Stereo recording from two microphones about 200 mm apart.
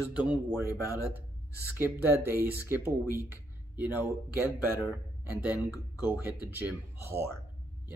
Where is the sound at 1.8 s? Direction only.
10° right (ahead or behind).